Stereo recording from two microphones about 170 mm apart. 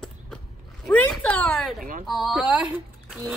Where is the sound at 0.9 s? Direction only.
10° left (ahead or behind).